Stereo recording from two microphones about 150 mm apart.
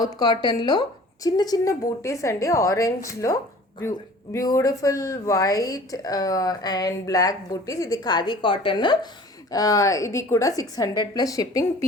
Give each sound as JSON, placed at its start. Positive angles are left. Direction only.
{"t": 0.0, "sound": "speech", "side_deg": 25}